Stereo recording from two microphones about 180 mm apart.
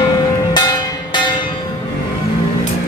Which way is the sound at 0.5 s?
25° left (ahead or behind).